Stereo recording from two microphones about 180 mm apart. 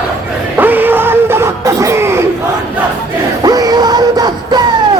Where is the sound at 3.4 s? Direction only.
20° right (ahead or behind).